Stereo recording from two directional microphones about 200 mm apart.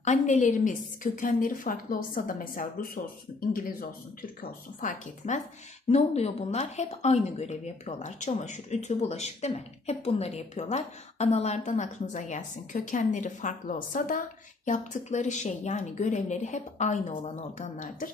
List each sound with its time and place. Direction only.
0.0 s speech: 40° left (ahead or behind)
4.4 s speech: 40° left (ahead or behind)